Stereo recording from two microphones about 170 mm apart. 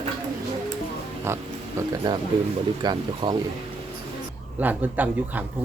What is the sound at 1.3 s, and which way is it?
A man's voice, 15° right (ahead or behind).